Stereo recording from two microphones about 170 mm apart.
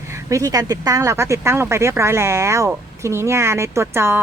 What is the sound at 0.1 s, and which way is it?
Speech, 20° right (ahead or behind).